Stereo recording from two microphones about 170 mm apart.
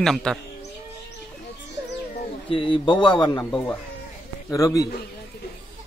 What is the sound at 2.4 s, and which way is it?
Speech, 30° left (ahead or behind).